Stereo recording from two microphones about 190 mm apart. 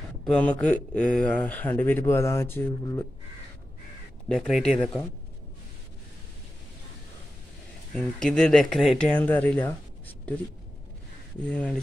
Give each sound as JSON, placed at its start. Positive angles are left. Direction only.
{"t": 0.2, "sound": "speech", "side_deg": 5}
{"t": 4.3, "sound": "speech", "side_deg": 0}
{"t": 7.9, "sound": "speech", "side_deg": 5}
{"t": 11.4, "sound": "speech", "side_deg": 5}